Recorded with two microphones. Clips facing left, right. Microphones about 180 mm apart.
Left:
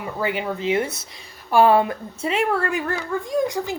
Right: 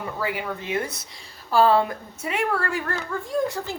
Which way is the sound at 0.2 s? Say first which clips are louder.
Left 6 dB; 20° left (ahead or behind).